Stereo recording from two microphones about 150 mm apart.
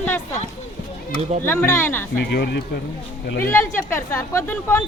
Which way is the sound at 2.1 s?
90° left.